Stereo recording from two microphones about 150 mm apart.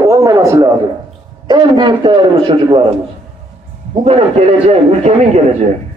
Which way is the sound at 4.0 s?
45° right (ahead or behind).